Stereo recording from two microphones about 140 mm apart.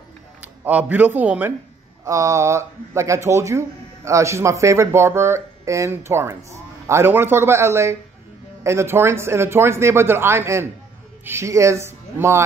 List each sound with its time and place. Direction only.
0.4 s speech: 10° right (ahead or behind)
2.0 s speech: 25° right (ahead or behind)